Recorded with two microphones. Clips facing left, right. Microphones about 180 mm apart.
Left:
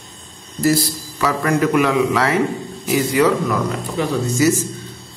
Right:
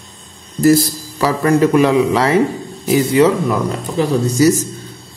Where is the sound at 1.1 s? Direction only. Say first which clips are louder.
Right 5 dB; 30° right (ahead or behind).